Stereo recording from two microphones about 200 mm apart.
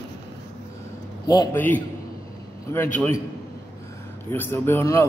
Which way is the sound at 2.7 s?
15° left (ahead or behind).